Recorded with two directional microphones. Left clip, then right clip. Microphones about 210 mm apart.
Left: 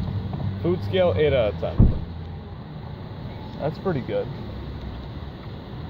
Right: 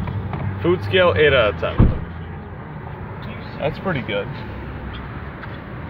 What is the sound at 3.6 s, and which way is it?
Speech, centre (ahead or behind).